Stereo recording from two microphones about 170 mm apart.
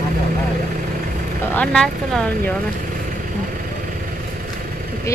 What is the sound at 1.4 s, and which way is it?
Speech, 10° left (ahead or behind).